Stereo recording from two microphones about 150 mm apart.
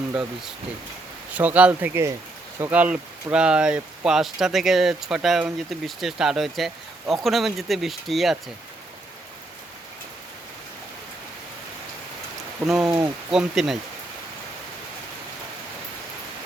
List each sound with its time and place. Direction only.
0.1 s speech: 5° right (ahead or behind)
12.6 s speech: 5° right (ahead or behind)